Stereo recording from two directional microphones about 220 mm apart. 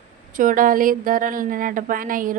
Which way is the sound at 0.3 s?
35° right (ahead or behind).